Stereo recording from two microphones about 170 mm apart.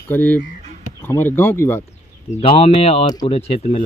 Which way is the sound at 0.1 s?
10° left (ahead or behind).